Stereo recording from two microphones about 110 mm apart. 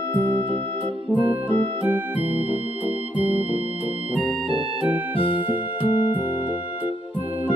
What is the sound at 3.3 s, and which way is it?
Music, 60° right (ahead or behind).